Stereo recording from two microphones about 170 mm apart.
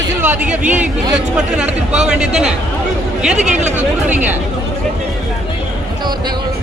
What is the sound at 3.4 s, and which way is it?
Speech, 45° right (ahead or behind).